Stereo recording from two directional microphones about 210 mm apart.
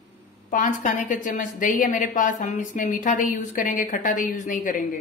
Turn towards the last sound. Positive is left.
turn(degrees=40)  # may be behind; listen again after turning